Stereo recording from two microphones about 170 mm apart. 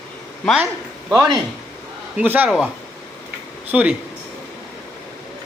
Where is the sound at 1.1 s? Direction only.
25° right (ahead or behind).